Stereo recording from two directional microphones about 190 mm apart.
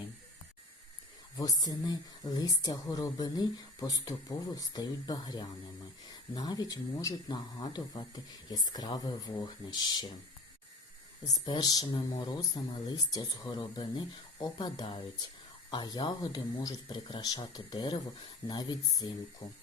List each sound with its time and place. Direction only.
1.4 s speech: 20° left (ahead or behind)
11.4 s speech: 20° left (ahead or behind)